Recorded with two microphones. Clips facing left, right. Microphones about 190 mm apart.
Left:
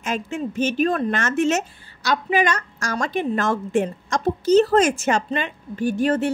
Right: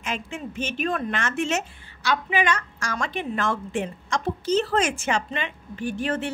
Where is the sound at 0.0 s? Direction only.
40° left (ahead or behind).